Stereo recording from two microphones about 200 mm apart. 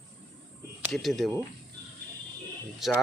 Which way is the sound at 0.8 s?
Centre (ahead or behind).